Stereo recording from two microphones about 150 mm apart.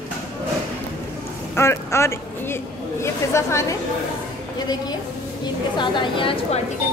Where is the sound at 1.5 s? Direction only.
15° left (ahead or behind).